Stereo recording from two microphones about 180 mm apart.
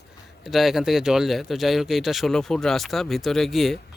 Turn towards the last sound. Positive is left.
turn(degrees=0)  # may be behind; listen again after turning